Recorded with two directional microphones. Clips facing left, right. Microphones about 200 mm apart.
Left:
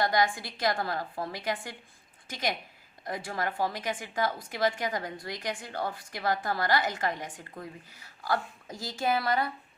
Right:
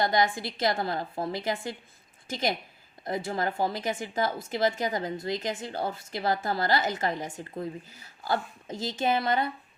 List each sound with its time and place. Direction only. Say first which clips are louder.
0.0 s a woman's voice: right 2 dB; 25° right (ahead or behind)